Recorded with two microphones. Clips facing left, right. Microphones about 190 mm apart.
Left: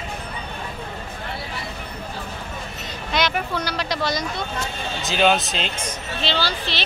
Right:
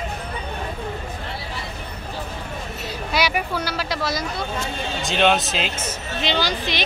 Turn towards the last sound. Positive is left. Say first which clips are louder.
# right 2 dB
turn(degrees=-15)  # may be behind; listen again after turning